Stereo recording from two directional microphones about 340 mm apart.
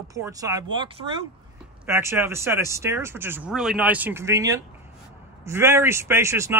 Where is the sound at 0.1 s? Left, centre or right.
Centre.